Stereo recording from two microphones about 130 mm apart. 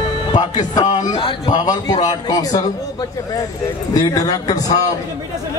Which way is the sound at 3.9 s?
30° left (ahead or behind).